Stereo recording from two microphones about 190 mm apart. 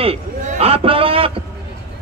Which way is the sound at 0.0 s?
30° right (ahead or behind).